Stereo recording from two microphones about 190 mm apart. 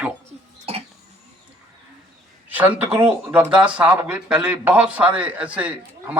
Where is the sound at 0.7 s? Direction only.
30° right (ahead or behind).